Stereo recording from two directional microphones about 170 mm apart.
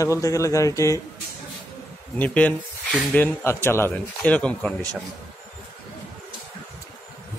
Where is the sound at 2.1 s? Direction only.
10° left (ahead or behind).